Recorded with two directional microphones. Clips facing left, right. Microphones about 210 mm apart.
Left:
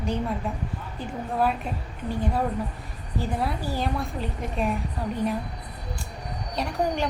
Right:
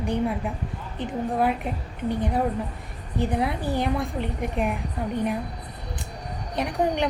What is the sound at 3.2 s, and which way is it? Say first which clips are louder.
A woman's voice: right 4 dB; 20° right (ahead or behind).